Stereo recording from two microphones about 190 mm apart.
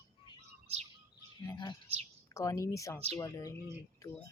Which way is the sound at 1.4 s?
25° left (ahead or behind).